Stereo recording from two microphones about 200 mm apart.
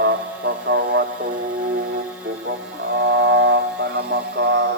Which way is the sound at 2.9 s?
65° right (ahead or behind).